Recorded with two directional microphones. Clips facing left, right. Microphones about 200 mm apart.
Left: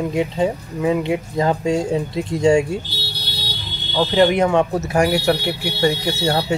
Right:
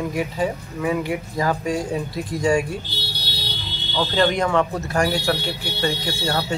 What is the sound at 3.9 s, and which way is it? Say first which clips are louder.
Speech: left 5 dB; 20° left (ahead or behind).